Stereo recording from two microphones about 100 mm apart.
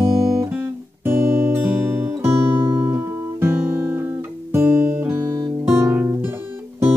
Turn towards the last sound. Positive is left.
turn(degrees=-25)  # may be behind; listen again after turning